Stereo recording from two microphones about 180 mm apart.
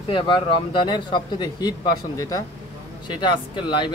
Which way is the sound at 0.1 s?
25° left (ahead or behind).